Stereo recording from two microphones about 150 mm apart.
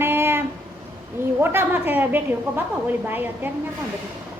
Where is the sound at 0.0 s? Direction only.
15° right (ahead or behind).